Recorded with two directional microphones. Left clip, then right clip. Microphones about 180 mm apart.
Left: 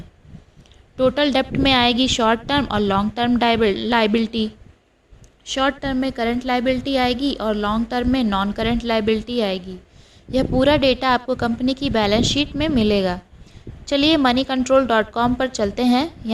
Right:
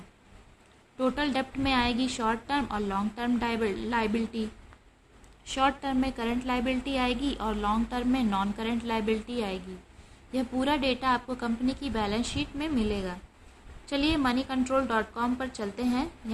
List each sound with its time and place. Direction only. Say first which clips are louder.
0.9 s a woman's voice: left 11 dB; 40° left (ahead or behind)
5.5 s a woman's voice: left 6 dB; 30° left (ahead or behind)